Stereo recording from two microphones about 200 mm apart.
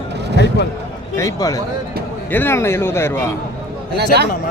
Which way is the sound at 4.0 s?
55° right (ahead or behind).